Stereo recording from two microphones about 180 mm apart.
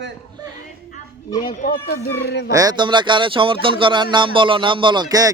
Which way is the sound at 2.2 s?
70° left (ahead or behind).